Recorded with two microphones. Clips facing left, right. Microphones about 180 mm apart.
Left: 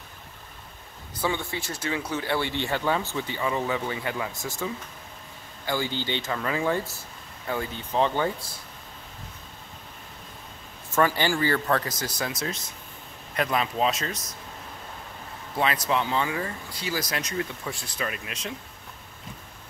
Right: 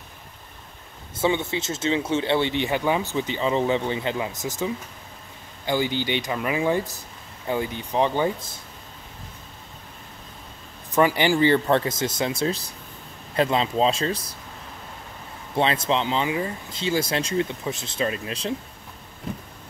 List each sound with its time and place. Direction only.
1.1 s speech: 20° right (ahead or behind)
10.9 s speech: 15° right (ahead or behind); by 14.3 s 30° right (ahead or behind)
15.5 s speech: 25° right (ahead or behind)